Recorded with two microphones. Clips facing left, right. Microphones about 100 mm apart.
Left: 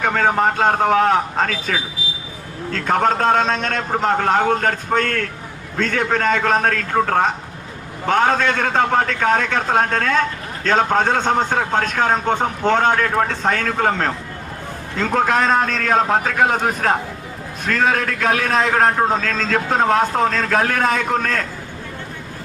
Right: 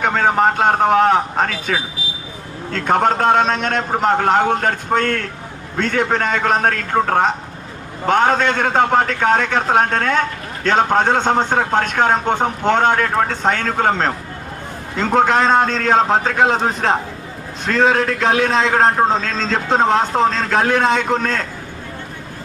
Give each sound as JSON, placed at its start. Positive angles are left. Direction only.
{"t": 0.0, "sound": "a man's voice", "side_deg": -25}
{"t": 2.7, "sound": "a man's voice", "side_deg": -30}